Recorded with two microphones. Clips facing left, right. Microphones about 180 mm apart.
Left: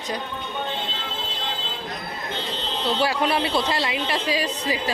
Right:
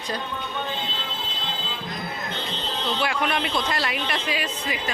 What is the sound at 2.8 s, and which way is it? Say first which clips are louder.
Speech: left 4 dB; 35° left (ahead or behind).